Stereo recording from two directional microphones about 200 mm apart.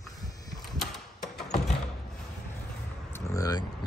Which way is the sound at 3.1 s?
15° left (ahead or behind).